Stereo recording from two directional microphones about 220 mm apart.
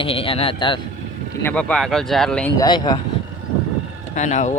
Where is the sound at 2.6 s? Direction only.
20° left (ahead or behind).